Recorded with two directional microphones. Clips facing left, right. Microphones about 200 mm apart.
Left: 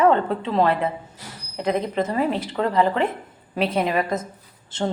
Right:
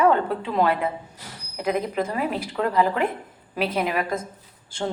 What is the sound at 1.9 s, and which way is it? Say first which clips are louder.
Speech: left 2 dB; 10° right (ahead or behind).